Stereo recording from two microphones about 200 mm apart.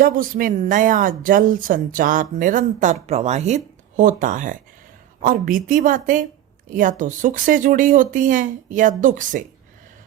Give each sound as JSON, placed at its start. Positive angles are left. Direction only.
{"t": 0.0, "sound": "speech", "side_deg": -45}